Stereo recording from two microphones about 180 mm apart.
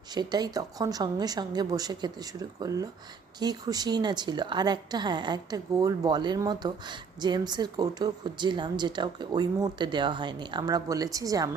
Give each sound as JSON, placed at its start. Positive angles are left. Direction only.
{"t": 0.1, "sound": "a woman's voice", "side_deg": -25}